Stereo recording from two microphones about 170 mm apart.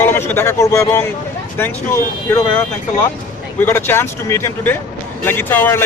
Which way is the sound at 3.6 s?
10° left (ahead or behind).